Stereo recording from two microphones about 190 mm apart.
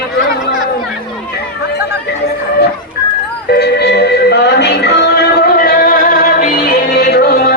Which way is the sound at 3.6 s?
60° left (ahead or behind).